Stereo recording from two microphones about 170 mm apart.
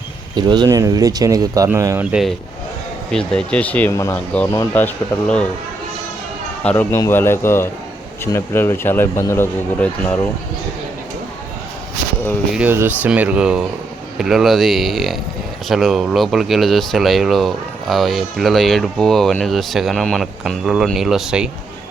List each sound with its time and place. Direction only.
0.3 s speech: 25° right (ahead or behind)
3.1 s speech: 5° left (ahead or behind)
6.6 s speech: 10° left (ahead or behind)
12.5 s speech: 10° right (ahead or behind)